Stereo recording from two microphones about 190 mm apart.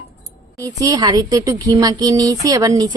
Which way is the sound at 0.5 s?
15° right (ahead or behind).